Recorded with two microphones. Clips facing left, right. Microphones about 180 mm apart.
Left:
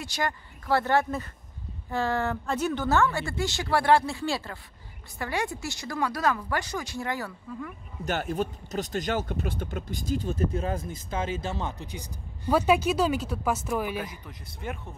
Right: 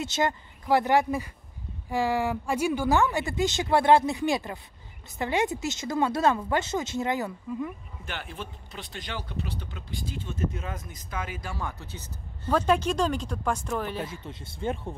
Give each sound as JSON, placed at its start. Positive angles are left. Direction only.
{"t": 0.0, "sound": "a woman's voice", "side_deg": -20}
{"t": 8.0, "sound": "speech", "side_deg": 45}
{"t": 13.9, "sound": "a woman's voice", "side_deg": -25}